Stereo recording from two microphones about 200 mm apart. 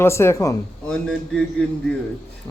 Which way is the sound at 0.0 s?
15° left (ahead or behind).